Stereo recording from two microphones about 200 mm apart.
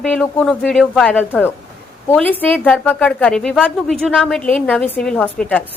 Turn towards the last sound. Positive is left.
turn(degrees=10)  # may be behind; listen again after turning